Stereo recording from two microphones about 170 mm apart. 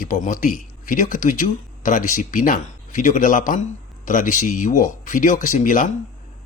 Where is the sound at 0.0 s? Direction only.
50° left (ahead or behind).